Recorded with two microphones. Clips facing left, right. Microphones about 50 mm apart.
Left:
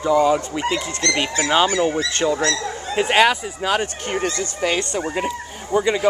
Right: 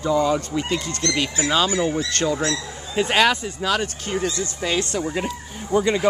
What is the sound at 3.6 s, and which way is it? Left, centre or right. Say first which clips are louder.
Speech: left 2 dB; left.